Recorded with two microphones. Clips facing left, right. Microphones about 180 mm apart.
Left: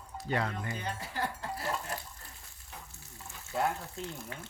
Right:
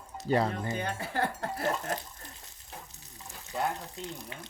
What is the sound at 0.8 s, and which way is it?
Speech, 60° right (ahead or behind).